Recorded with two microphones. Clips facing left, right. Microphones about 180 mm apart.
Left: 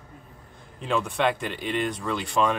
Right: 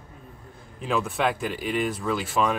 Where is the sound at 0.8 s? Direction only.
Centre (ahead or behind).